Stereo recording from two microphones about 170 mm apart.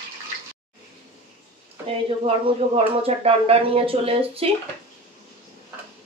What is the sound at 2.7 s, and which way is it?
Speech, 35° right (ahead or behind).